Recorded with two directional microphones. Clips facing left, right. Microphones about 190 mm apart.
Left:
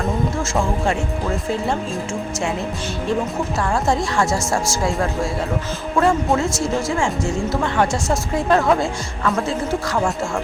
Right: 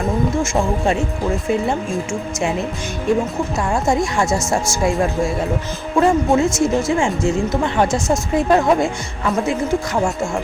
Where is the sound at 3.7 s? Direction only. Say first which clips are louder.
Right 2 dB; 15° right (ahead or behind).